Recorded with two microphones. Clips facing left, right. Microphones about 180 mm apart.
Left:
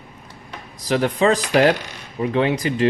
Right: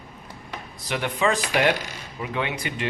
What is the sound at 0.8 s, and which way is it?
Speech, 40° left (ahead or behind).